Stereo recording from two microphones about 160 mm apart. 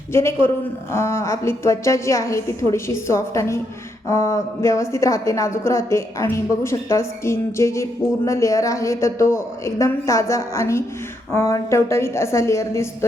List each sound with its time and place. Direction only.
0.1 s a woman's voice: 15° left (ahead or behind)